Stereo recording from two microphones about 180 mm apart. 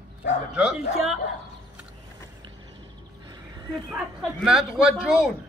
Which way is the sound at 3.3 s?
25° right (ahead or behind).